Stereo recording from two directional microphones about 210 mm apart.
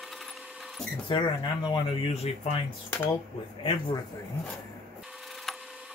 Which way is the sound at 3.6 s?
25° left (ahead or behind).